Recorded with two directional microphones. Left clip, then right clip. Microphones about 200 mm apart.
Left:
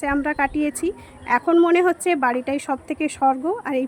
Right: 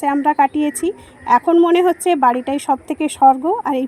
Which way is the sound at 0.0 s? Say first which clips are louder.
Right 7 dB; 20° right (ahead or behind).